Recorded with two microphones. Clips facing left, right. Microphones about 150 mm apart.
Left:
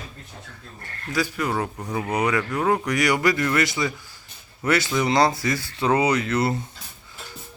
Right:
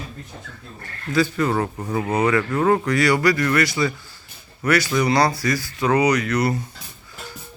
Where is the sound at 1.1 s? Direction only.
10° left (ahead or behind).